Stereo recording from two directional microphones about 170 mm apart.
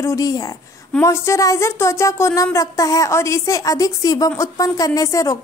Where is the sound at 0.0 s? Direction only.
20° left (ahead or behind).